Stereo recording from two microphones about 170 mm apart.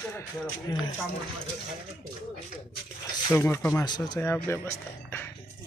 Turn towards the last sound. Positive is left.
turn(degrees=15)  # may be behind; listen again after turning